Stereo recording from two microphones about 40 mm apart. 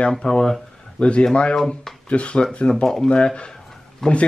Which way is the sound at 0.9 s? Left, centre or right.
Left.